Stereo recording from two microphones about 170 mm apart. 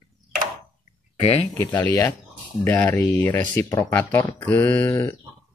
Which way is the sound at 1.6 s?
20° left (ahead or behind).